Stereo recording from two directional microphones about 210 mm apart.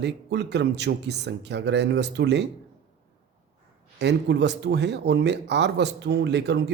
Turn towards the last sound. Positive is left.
turn(degrees=-55)  # may be behind; listen again after turning